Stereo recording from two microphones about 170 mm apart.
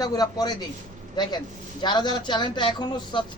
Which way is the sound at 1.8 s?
25° left (ahead or behind).